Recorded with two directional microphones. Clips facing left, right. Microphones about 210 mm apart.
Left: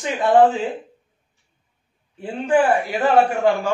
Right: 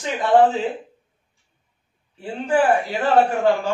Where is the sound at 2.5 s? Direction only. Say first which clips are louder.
Left 1 dB; 10° left (ahead or behind).